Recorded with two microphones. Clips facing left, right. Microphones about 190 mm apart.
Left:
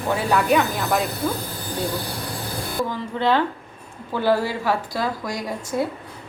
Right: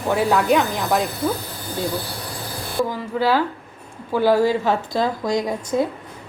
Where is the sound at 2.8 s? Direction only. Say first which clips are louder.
Right 3 dB; 10° right (ahead or behind).